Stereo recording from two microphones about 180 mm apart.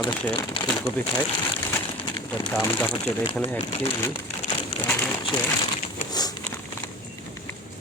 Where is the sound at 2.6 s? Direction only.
10° left (ahead or behind).